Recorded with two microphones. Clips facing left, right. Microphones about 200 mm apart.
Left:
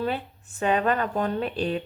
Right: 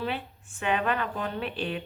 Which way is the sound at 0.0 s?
40° left (ahead or behind).